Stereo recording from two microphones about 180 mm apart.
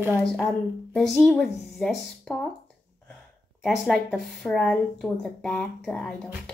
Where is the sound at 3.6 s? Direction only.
Centre (ahead or behind).